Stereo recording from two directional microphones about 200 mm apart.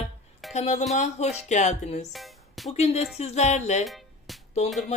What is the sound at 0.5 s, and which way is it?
Music, 35° left (ahead or behind).